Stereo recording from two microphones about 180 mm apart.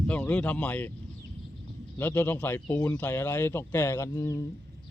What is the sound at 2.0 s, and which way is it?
Speech, 10° left (ahead or behind).